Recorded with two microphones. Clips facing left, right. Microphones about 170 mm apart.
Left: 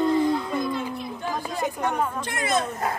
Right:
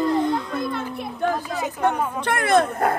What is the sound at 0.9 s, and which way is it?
Chatter, 60° right (ahead or behind).